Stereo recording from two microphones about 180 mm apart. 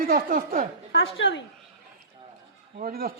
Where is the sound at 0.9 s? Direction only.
90° left.